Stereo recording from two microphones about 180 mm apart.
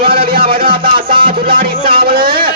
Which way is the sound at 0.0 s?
55° right (ahead or behind).